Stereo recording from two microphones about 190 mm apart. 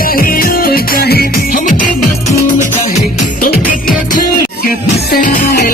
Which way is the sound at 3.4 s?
45° left (ahead or behind).